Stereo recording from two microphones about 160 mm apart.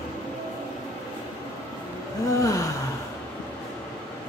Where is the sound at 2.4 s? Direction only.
20° left (ahead or behind).